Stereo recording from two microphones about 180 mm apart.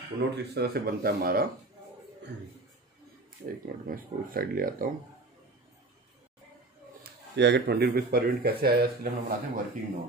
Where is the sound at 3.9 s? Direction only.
55° right (ahead or behind).